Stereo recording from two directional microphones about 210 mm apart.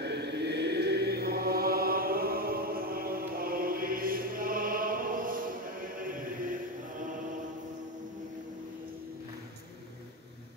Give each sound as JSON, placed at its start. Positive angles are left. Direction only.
{"t": 0.0, "sound": "chant", "side_deg": -55}